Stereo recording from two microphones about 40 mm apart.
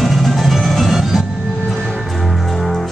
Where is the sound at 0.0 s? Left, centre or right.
Centre.